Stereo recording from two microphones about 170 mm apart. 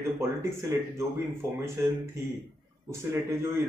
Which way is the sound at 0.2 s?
15° right (ahead or behind).